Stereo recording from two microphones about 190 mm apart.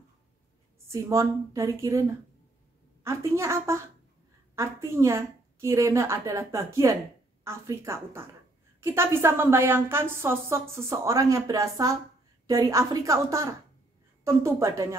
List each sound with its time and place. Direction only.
1.0 s a woman's voice: 15° right (ahead or behind)